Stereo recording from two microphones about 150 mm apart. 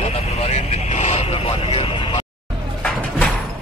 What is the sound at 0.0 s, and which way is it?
Vehicle, 45° left (ahead or behind).